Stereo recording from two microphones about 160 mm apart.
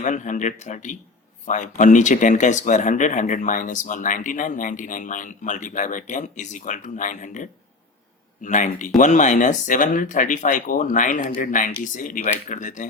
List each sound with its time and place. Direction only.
0.0 s speech: 50° left (ahead or behind)
8.4 s speech: 50° left (ahead or behind)